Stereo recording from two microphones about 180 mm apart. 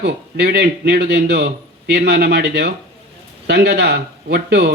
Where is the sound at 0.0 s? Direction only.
65° right (ahead or behind).